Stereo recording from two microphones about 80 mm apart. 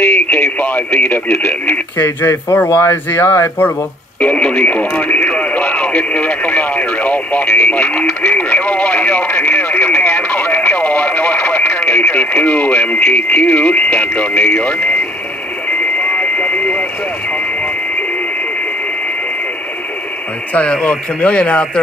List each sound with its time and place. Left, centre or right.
0.0 s speech: left
4.2 s radio: centre
13.1 s speech: centre
16.0 s vehicle: centre
20.5 s speech: centre